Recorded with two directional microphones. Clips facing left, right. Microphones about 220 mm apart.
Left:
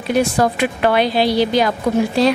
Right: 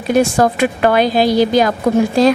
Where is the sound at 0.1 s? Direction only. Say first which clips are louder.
Right 3 dB; 45° right (ahead or behind).